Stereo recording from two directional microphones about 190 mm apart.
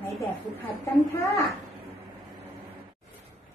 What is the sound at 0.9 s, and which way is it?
Speech, 15° left (ahead or behind).